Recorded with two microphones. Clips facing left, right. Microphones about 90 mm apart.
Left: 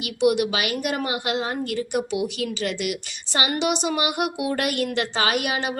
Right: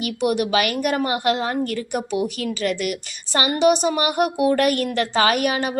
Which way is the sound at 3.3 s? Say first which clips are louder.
Right 6 dB; 40° right (ahead or behind).